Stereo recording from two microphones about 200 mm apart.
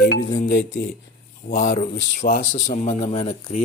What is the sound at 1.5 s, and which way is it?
Speech, 40° left (ahead or behind).